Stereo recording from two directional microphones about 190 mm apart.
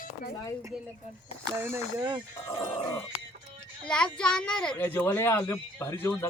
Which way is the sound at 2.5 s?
25° left (ahead or behind).